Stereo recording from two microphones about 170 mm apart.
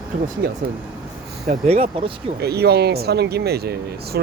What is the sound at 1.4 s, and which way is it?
Speech, 40° right (ahead or behind).